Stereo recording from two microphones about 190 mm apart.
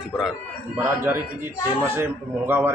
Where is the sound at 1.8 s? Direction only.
10° right (ahead or behind).